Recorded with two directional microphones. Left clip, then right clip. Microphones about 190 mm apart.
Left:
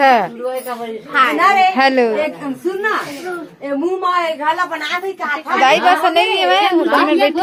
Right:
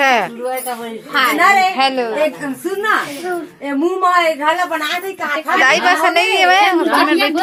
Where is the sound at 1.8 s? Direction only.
50° left (ahead or behind).